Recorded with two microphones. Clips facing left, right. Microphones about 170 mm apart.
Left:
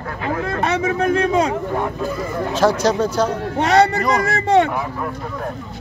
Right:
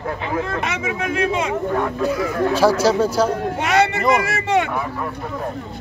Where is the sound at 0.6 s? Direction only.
35° left (ahead or behind).